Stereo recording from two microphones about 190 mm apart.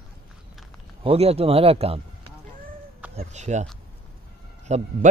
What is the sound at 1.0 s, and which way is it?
A man's voice, 30° right (ahead or behind).